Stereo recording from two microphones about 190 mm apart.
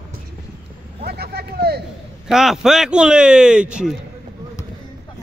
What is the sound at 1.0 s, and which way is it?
Speech, 55° right (ahead or behind).